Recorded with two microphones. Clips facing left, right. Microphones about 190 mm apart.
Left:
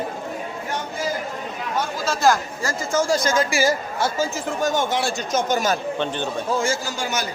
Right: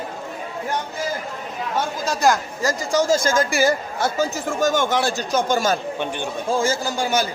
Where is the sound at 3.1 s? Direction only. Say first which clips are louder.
Right 1 dB; 50° right (ahead or behind).